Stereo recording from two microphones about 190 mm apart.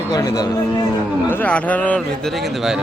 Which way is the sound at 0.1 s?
20° left (ahead or behind).